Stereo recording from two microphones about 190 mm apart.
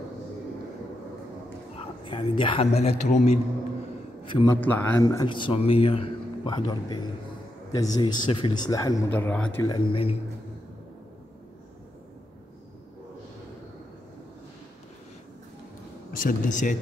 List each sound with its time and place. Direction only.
2.0 s a man's voice: 25° left (ahead or behind)
4.2 s a sound: 25° left (ahead or behind)
4.5 s speech: 10° left (ahead or behind)
9.1 s speech: 10° left (ahead or behind)
9.7 s speech: 30° left (ahead or behind)
16.1 s speech: 50° left (ahead or behind)